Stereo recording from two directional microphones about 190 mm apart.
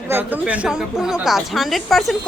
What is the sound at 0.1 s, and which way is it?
Speech, 10° right (ahead or behind).